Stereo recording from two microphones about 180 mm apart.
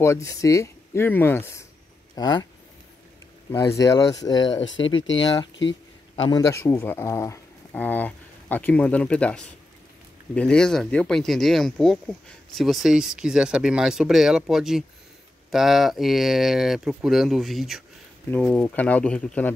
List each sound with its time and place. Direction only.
0.0 s speech: 15° left (ahead or behind)
3.5 s speech: 15° left (ahead or behind)
5.0 s speech: 90° left
6.2 s speech: 20° left (ahead or behind)